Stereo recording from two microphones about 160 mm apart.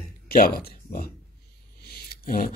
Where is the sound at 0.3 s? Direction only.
70° left (ahead or behind).